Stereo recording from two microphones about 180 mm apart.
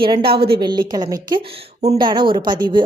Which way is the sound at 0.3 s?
30° right (ahead or behind).